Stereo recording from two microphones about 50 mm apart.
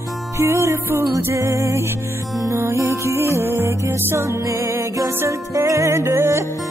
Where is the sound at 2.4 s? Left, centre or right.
Right.